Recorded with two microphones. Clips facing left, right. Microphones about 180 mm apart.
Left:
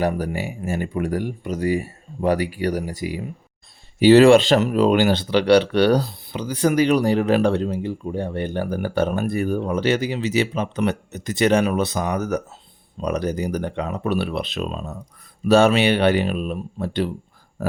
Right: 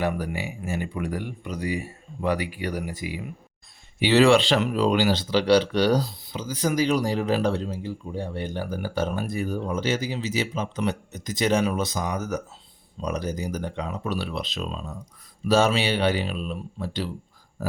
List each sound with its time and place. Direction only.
0.0 s speech: 40° left (ahead or behind)
15.4 s speech: 65° left (ahead or behind)